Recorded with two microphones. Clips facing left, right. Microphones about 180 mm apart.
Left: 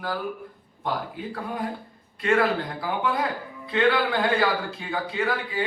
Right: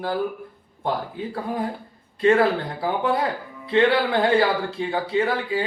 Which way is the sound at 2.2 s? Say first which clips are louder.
Right 4 dB; 30° right (ahead or behind).